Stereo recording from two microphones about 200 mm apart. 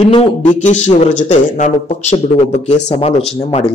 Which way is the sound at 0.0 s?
30° left (ahead or behind).